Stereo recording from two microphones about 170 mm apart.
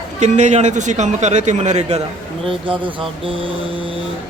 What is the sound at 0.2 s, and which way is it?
A man's voice, 45° right (ahead or behind).